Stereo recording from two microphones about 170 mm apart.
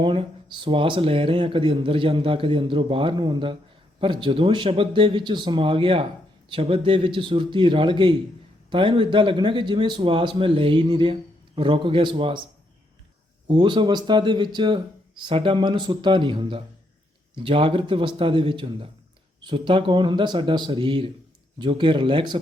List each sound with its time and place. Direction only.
0.0 s speech: 30° right (ahead or behind)
13.5 s speech: 30° right (ahead or behind)